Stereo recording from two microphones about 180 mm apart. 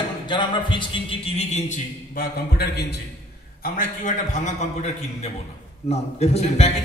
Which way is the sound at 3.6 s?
50° left (ahead or behind).